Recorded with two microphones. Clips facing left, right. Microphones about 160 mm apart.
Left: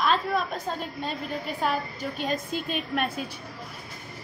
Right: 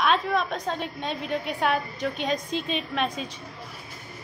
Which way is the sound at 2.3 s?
5° left (ahead or behind).